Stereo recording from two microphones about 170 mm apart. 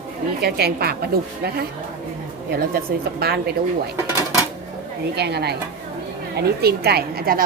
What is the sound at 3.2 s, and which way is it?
Speech, 65° right (ahead or behind).